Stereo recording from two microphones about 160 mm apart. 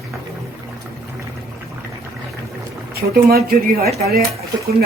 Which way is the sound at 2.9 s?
70° right (ahead or behind).